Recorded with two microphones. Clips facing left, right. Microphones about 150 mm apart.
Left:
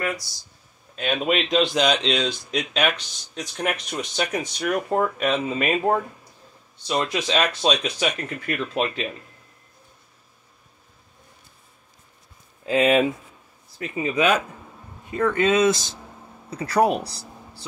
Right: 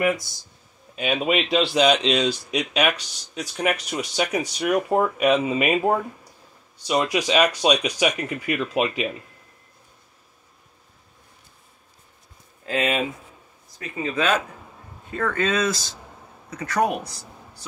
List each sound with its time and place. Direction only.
0.0 s speech: 20° right (ahead or behind)
0.9 s speech: 5° right (ahead or behind)
13.7 s speech: 15° left (ahead or behind); by 17.6 s 30° left (ahead or behind)